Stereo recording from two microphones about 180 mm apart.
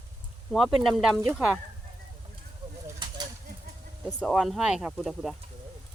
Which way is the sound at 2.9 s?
25° right (ahead or behind).